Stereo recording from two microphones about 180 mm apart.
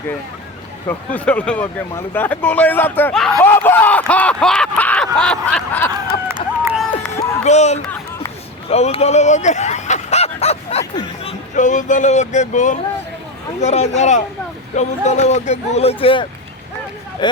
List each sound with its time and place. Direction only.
0.9 s speech: 10° left (ahead or behind)
5.9 s a sound: 15° right (ahead or behind)
7.4 s speech: 40° left (ahead or behind)
11.5 s speech: 45° left (ahead or behind)